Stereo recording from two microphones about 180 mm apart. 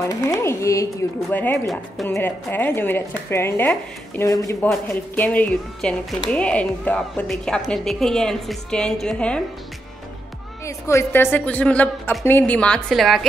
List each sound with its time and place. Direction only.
0.1 s a sound: 20° left (ahead or behind)
1.3 s speech: 10° left (ahead or behind)
10.6 s speech: 15° left (ahead or behind)